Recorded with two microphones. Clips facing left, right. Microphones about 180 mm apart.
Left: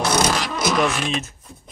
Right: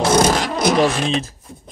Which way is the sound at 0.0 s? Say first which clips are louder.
Right 5 dB; 40° right (ahead or behind).